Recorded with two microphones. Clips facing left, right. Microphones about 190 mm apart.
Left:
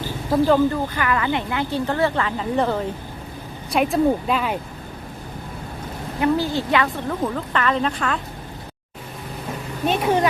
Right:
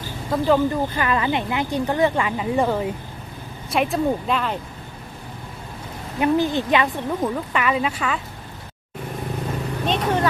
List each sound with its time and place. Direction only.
0.3 s speech: centre (ahead or behind)
0.7 s speech: 25° right (ahead or behind); by 4.5 s 5° left (ahead or behind)
6.1 s speech: 20° right (ahead or behind)
9.8 s speech: 10° left (ahead or behind)